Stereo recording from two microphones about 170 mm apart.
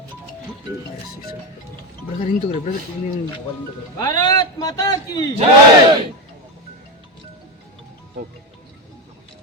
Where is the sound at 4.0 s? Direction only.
20° left (ahead or behind).